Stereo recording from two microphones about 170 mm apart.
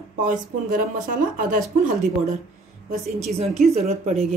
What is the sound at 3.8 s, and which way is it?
Speech, 40° right (ahead or behind).